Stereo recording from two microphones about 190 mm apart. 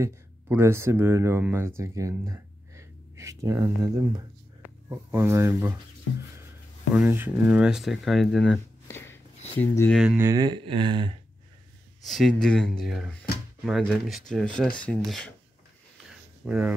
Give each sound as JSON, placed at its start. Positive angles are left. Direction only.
{"t": 0.0, "sound": "speech", "side_deg": -15}
{"t": 6.9, "sound": "speech", "side_deg": -10}
{"t": 8.9, "sound": "a sound", "side_deg": 10}
{"t": 9.6, "sound": "speech", "side_deg": 10}
{"t": 9.9, "sound": "speech", "side_deg": -10}
{"t": 12.0, "sound": "speech", "side_deg": 0}
{"t": 16.4, "sound": "speech", "side_deg": -5}